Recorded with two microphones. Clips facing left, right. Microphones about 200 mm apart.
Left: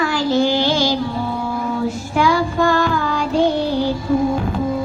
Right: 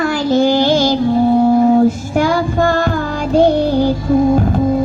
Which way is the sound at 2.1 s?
45° right (ahead or behind).